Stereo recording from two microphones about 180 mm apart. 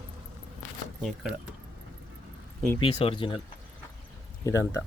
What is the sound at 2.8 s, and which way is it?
Speech, 30° left (ahead or behind).